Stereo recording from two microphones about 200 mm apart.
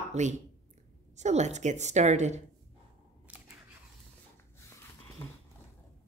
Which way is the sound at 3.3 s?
5° right (ahead or behind).